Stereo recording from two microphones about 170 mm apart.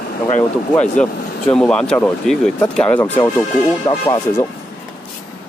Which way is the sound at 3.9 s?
25° left (ahead or behind).